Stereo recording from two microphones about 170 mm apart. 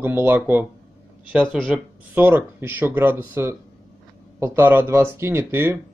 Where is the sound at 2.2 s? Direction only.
10° right (ahead or behind).